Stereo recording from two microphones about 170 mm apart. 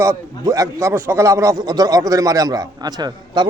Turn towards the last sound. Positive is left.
turn(degrees=-25)  # may be behind; listen again after turning